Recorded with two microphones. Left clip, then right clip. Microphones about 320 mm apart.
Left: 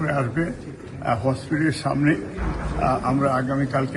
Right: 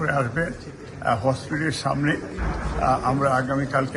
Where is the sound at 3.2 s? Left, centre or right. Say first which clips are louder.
Even; centre.